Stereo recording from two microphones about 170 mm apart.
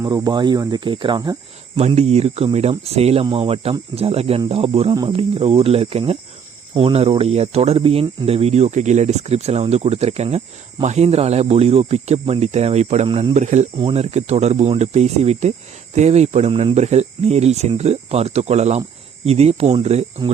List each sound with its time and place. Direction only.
0.0 s speech: 25° right (ahead or behind)
1.7 s speech: 35° right (ahead or behind)
13.3 s speech: 45° right (ahead or behind)